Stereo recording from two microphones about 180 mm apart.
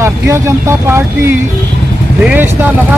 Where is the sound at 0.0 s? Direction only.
15° right (ahead or behind).